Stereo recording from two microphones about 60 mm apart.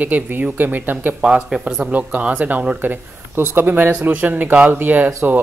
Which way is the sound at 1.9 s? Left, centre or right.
Right.